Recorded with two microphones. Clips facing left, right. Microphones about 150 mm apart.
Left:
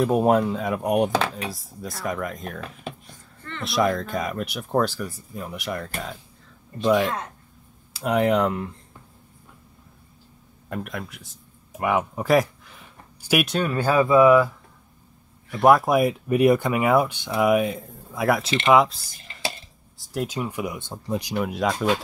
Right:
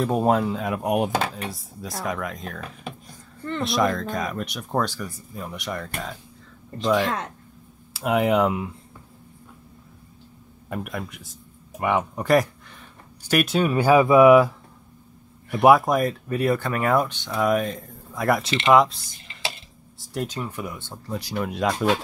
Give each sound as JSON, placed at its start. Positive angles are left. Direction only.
{"t": 0.0, "sound": "speech", "side_deg": 5}
{"t": 3.6, "sound": "speech", "side_deg": 0}
{"t": 10.7, "sound": "speech", "side_deg": -5}
{"t": 13.5, "sound": "speech", "side_deg": -10}
{"t": 15.6, "sound": "speech", "side_deg": 0}
{"t": 20.0, "sound": "a sound", "side_deg": 0}
{"t": 20.3, "sound": "speech", "side_deg": 10}
{"t": 21.4, "sound": "speech", "side_deg": 0}